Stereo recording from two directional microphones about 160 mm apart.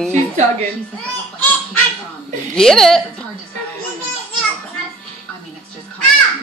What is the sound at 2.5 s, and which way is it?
Speech, 5° left (ahead or behind).